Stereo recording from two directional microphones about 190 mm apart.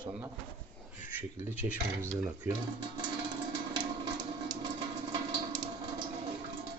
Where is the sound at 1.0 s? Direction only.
10° right (ahead or behind).